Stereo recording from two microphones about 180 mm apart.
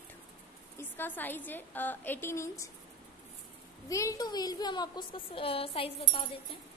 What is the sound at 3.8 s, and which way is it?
A woman's voice, 15° left (ahead or behind).